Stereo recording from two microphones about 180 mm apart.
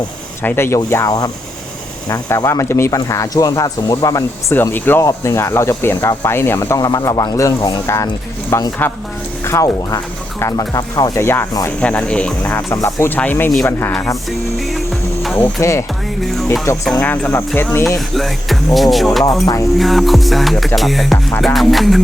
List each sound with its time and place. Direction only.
0.4 s speech: 15° left (ahead or behind)
14.3 s music: centre (ahead or behind)
15.4 s speech: 10° left (ahead or behind)
16.2 s music: centre (ahead or behind)
16.8 s speech: 5° left (ahead or behind)
17.8 s music: centre (ahead or behind)